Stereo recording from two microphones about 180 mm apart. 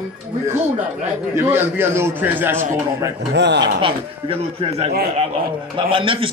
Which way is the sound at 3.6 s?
30° right (ahead or behind).